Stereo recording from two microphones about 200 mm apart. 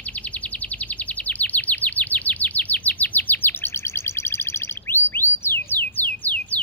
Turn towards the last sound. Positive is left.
turn(degrees=10)  # may be behind; listen again after turning